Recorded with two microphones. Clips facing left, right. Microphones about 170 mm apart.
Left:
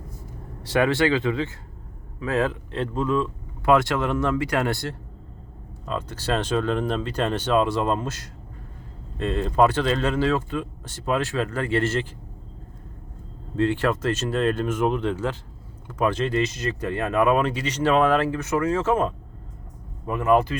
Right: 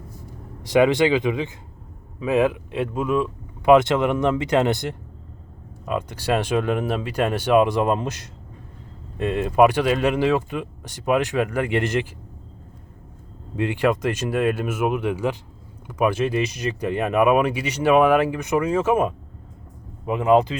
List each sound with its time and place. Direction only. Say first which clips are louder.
0.6 s speech: right 4 dB; 15° right (ahead or behind)
13.6 s speech: right 1 dB; 15° right (ahead or behind)